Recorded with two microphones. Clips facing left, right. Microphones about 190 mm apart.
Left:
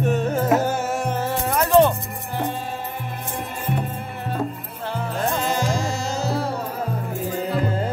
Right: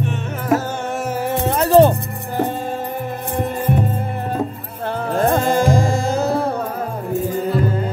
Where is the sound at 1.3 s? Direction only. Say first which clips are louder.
Right 4 dB; 30° right (ahead or behind).